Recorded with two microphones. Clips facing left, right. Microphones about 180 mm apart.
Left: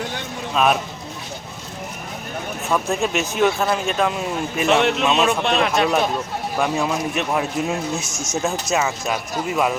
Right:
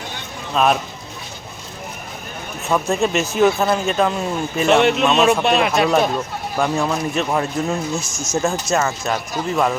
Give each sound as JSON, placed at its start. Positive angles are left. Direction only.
{"t": 0.5, "sound": "speech", "side_deg": 0}
{"t": 2.6, "sound": "speech", "side_deg": 0}
{"t": 8.0, "sound": "speech", "side_deg": 25}
{"t": 8.7, "sound": "speech", "side_deg": 5}